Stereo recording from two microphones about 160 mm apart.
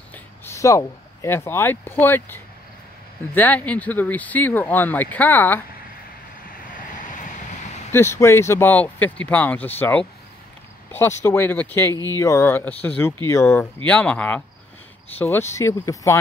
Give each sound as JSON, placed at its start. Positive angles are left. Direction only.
{"t": 0.1, "sound": "speech", "side_deg": 15}
{"t": 7.9, "sound": "speech", "side_deg": 15}